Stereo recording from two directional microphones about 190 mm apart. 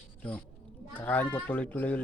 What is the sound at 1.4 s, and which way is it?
Speech, 10° left (ahead or behind).